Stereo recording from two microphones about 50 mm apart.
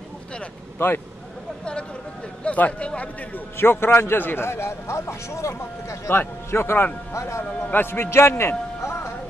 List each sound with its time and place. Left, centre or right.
0.7 s speech: left
1.6 s speech: centre
3.5 s a man's voice: left
7.2 s a man's voice: left
7.4 s a man's voice: left